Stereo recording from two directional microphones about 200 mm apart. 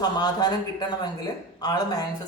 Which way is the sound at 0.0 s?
20° left (ahead or behind).